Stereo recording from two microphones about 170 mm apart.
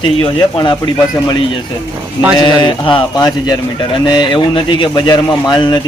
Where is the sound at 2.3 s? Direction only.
25° left (ahead or behind).